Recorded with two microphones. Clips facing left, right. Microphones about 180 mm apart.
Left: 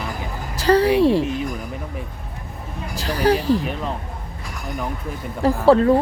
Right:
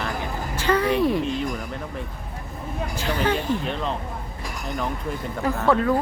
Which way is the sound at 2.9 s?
35° left (ahead or behind).